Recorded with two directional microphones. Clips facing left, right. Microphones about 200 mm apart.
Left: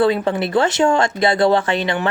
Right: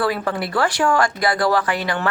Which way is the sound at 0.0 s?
25° left (ahead or behind).